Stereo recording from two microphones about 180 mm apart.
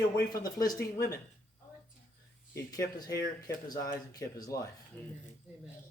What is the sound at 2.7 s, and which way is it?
Speech, 20° left (ahead or behind).